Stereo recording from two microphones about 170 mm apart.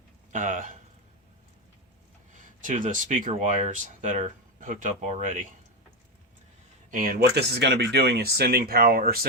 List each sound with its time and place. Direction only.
0.3 s speech: 50° right (ahead or behind)
2.3 s speech: 50° right (ahead or behind)
6.9 s speech: 55° right (ahead or behind)